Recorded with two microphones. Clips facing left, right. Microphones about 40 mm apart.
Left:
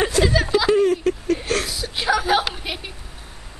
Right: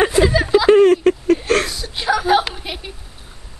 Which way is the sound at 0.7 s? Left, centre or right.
Right.